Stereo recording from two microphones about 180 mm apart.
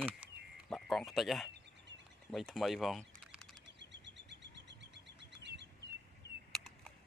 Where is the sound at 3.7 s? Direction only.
80° right.